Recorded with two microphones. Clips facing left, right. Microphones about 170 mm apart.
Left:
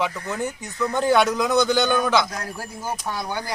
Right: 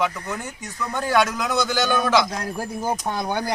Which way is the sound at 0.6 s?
20° left (ahead or behind).